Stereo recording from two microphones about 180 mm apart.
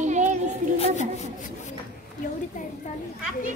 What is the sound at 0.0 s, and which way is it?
Child singing, 40° right (ahead or behind).